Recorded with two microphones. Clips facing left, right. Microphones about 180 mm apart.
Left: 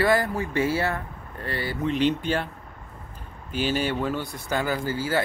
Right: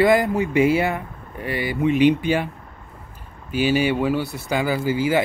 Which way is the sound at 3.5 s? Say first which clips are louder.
Right 6 dB; 10° right (ahead or behind).